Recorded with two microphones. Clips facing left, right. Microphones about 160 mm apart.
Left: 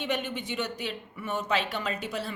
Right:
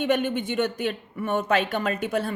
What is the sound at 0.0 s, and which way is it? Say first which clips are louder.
Speech: right 8 dB; 55° right (ahead or behind).